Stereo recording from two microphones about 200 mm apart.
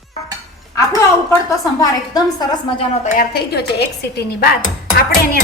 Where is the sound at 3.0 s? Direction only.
50° left (ahead or behind).